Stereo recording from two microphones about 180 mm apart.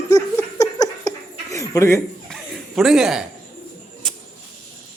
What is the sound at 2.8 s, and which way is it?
Speech, centre (ahead or behind).